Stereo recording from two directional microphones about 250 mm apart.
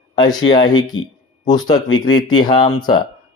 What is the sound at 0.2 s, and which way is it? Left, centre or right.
A man's voice, centre.